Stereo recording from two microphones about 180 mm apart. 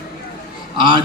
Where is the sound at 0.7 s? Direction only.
25° right (ahead or behind).